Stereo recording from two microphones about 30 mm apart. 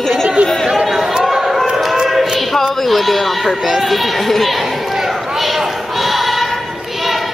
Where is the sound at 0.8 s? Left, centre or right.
Centre.